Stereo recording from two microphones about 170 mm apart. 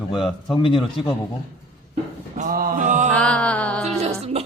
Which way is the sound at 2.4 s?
50° right (ahead or behind).